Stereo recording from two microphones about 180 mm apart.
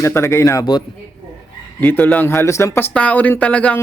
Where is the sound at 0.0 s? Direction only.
15° left (ahead or behind).